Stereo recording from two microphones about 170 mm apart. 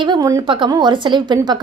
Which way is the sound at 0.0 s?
25° right (ahead or behind).